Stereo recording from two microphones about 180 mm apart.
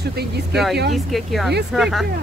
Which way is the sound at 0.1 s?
65° right (ahead or behind).